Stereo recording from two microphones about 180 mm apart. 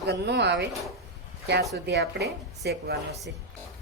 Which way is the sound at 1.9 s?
65° right (ahead or behind).